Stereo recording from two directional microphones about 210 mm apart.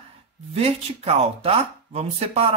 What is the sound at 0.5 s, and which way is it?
Speech, 30° right (ahead or behind).